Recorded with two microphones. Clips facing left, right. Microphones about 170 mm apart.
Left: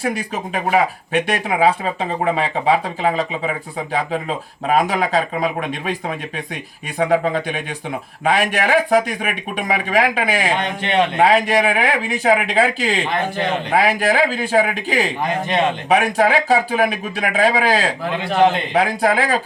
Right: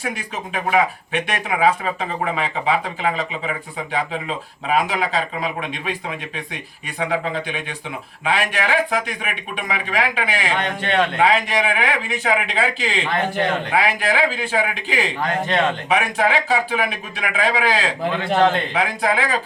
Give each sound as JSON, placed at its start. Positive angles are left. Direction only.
{"t": 0.0, "sound": "speech", "side_deg": 35}
{"t": 10.5, "sound": "speech", "side_deg": 20}
{"t": 11.2, "sound": "speech", "side_deg": 40}
{"t": 13.3, "sound": "a man's voice", "side_deg": 20}
{"t": 13.7, "sound": "speech", "side_deg": 40}
{"t": 15.2, "sound": "speech", "side_deg": 20}
{"t": 15.9, "sound": "speech", "side_deg": 40}
{"t": 18.3, "sound": "speech", "side_deg": 15}
{"t": 18.7, "sound": "speech", "side_deg": 35}